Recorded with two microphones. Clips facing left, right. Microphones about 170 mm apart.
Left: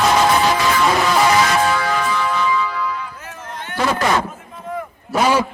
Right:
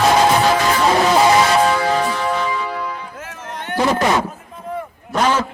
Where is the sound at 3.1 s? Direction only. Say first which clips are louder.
Right 2 dB; 70° right (ahead or behind).